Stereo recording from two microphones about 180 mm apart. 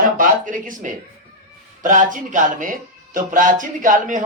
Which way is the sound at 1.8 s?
45° right (ahead or behind).